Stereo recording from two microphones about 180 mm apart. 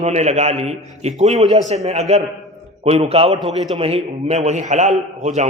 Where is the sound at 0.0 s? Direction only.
40° right (ahead or behind).